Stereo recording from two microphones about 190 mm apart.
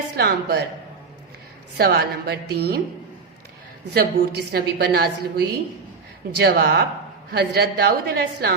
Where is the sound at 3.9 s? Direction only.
55° right (ahead or behind).